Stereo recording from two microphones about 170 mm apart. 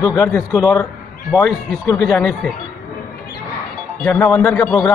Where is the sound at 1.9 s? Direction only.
15° left (ahead or behind).